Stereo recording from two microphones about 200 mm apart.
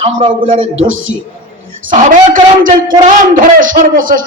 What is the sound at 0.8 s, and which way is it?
Speech, 80° right.